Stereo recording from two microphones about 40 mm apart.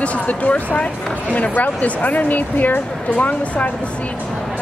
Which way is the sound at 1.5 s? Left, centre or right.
Left.